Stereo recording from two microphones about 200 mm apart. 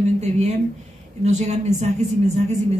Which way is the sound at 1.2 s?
35° right (ahead or behind).